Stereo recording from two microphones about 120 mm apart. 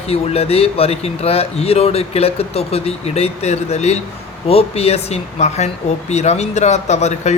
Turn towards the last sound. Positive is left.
turn(degrees=70)  # may be behind; listen again after turning